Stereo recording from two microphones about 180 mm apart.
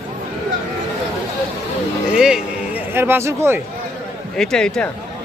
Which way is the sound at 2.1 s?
5° right (ahead or behind).